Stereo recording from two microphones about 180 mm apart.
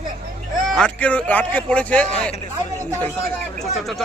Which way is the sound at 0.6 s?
5° left (ahead or behind).